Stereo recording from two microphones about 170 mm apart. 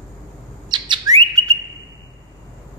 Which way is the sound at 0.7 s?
25° right (ahead or behind).